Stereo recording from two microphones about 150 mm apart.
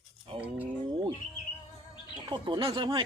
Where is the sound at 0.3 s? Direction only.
35° right (ahead or behind).